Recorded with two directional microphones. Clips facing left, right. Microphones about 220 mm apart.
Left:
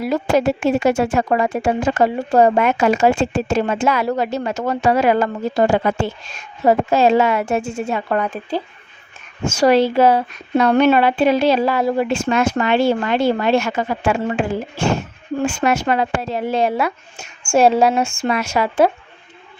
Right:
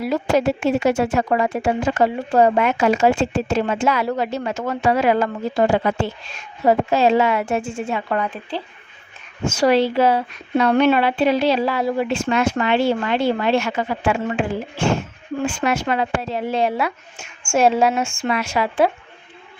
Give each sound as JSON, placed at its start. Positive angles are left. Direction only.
{"t": 0.0, "sound": "a woman's voice", "side_deg": 45}